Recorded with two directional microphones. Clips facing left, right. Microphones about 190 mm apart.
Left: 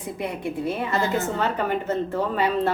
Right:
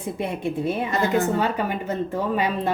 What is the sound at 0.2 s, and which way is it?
A woman's voice, 25° right (ahead or behind).